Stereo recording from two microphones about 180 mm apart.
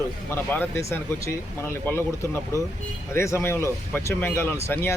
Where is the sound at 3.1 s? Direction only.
15° left (ahead or behind).